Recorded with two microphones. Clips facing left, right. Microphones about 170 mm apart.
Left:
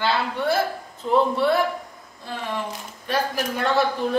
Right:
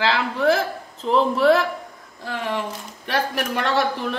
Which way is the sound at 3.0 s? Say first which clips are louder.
Right 1 dB; 75° right (ahead or behind).